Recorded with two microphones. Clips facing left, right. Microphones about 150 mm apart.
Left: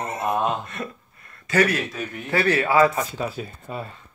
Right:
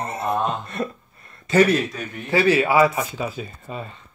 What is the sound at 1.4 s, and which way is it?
Speech, 25° right (ahead or behind).